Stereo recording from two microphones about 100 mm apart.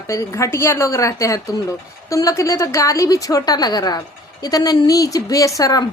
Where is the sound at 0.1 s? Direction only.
30° left (ahead or behind).